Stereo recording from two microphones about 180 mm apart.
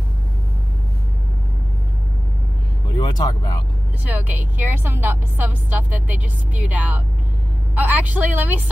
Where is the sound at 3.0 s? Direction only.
20° left (ahead or behind).